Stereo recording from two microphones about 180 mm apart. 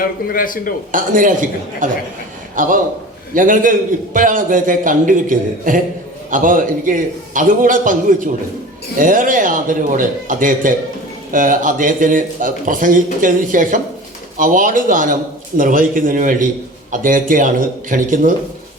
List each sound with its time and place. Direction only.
0.0 s speech: 50° left (ahead or behind)
0.9 s a man's voice: 50° right (ahead or behind)